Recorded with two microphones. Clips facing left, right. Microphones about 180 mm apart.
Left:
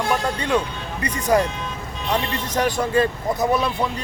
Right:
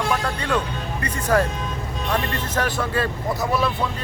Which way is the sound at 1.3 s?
15° left (ahead or behind).